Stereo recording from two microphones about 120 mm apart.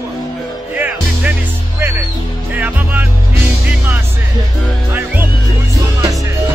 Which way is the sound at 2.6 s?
15° right (ahead or behind).